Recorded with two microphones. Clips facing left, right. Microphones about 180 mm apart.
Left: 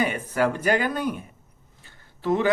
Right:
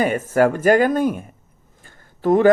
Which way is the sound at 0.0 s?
45° right (ahead or behind).